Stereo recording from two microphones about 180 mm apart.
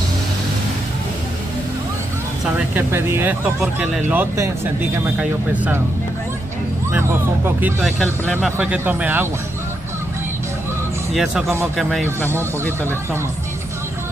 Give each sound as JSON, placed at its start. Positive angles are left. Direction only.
{"t": 2.5, "sound": "speech", "side_deg": -10}
{"t": 6.9, "sound": "speech", "side_deg": -15}
{"t": 7.6, "sound": "speech", "side_deg": 0}
{"t": 8.5, "sound": "speech", "side_deg": -10}
{"t": 11.1, "sound": "speech", "side_deg": 0}